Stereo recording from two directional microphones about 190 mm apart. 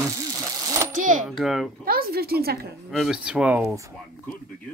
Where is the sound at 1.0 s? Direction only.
40° right (ahead or behind).